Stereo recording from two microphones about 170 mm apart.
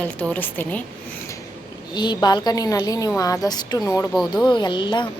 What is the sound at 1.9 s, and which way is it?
Speech, 25° left (ahead or behind).